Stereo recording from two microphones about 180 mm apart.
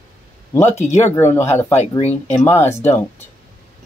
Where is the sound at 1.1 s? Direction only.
15° left (ahead or behind).